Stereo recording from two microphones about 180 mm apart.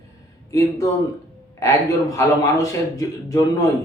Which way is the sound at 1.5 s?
15° left (ahead or behind).